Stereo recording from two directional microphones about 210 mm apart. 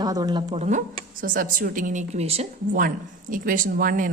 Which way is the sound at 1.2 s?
40° right (ahead or behind).